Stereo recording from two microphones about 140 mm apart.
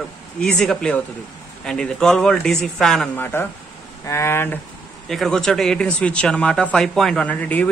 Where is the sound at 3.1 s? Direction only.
15° left (ahead or behind).